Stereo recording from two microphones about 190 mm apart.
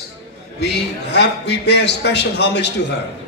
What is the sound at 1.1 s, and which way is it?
A man's voice, 65° left (ahead or behind).